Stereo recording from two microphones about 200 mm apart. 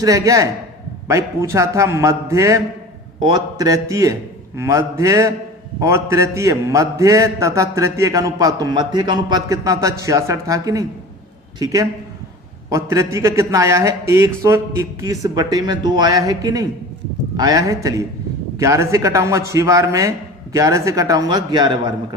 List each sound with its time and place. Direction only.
0.0 s a man's voice: 15° right (ahead or behind)